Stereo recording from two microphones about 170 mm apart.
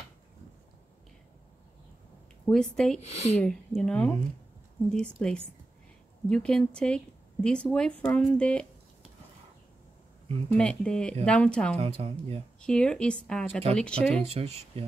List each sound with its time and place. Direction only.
2.4 s speech: 5° left (ahead or behind)
3.0 s a woman's voice: 40° left (ahead or behind)
3.3 s speech: 5° left (ahead or behind)
10.6 s speech: 5° left (ahead or behind)
11.7 s a woman's voice: 35° right (ahead or behind)
12.5 s speech: 5° left (ahead or behind)
14.2 s a woman's voice: 40° right (ahead or behind)